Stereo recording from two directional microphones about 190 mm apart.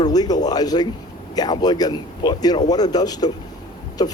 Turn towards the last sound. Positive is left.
turn(degrees=20)  # may be behind; listen again after turning